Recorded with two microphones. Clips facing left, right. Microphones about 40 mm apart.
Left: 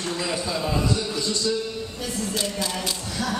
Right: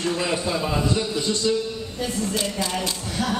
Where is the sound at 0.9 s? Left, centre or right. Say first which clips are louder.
Right 2 dB; right.